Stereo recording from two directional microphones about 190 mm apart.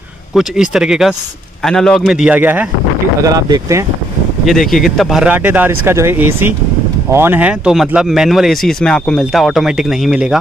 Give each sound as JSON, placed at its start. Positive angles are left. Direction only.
{"t": 0.3, "sound": "speech", "side_deg": 0}
{"t": 3.2, "sound": "speech", "side_deg": -20}
{"t": 4.5, "sound": "speech", "side_deg": 0}